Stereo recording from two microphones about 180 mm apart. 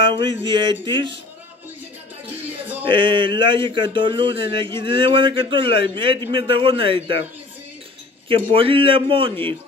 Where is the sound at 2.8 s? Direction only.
30° right (ahead or behind).